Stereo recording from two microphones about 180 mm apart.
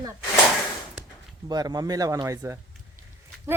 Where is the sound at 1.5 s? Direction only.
20° right (ahead or behind).